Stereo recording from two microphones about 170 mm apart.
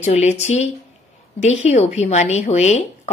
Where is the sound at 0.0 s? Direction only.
40° left (ahead or behind).